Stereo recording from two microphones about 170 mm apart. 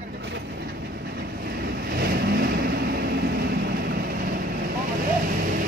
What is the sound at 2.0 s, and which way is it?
Vehicle, 70° right (ahead or behind).